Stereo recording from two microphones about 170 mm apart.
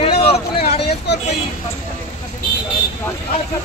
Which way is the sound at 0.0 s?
35° left (ahead or behind).